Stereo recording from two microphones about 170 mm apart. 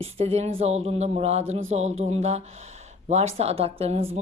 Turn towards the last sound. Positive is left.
turn(degrees=-40)  # may be behind; listen again after turning